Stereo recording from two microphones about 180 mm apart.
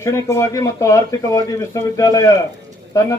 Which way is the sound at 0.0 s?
15° left (ahead or behind).